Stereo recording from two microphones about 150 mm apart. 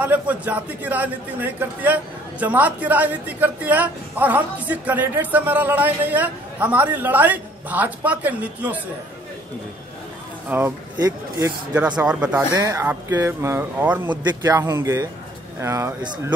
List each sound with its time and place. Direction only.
0.0 s speech: 10° right (ahead or behind)
10.5 s speech: 10° right (ahead or behind)
11.0 s speech: 25° right (ahead or behind)
12.0 s speech: 10° right (ahead or behind)
12.5 s speech: 20° right (ahead or behind)
14.4 s speech: 25° right (ahead or behind)